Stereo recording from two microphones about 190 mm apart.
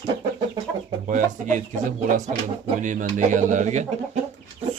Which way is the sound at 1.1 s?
45° right (ahead or behind).